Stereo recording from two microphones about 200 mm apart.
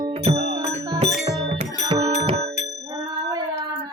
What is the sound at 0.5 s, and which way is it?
Music, 30° right (ahead or behind).